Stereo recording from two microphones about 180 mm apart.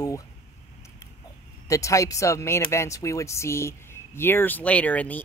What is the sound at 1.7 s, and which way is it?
Speech, 15° left (ahead or behind).